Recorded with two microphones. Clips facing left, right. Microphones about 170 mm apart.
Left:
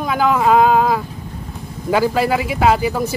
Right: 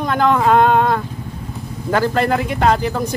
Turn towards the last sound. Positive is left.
turn(degrees=5)  # may be behind; listen again after turning